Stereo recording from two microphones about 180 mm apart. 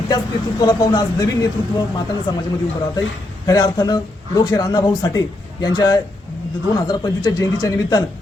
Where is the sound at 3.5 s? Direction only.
20° left (ahead or behind).